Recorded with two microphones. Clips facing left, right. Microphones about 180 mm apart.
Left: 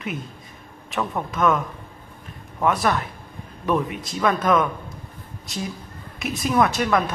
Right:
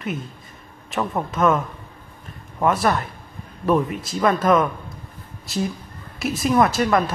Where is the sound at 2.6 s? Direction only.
Centre (ahead or behind).